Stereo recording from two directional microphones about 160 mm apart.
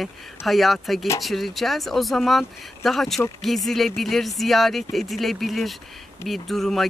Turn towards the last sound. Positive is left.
turn(degrees=0)  # may be behind; listen again after turning